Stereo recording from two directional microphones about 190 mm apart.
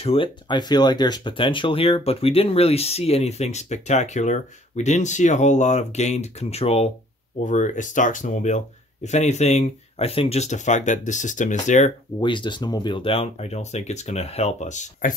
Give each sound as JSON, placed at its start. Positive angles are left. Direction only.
{"t": 0.0, "sound": "speech", "side_deg": 30}
{"t": 12.2, "sound": "speech", "side_deg": 25}